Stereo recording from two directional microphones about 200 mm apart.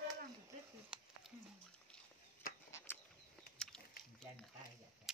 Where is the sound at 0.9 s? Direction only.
5° right (ahead or behind).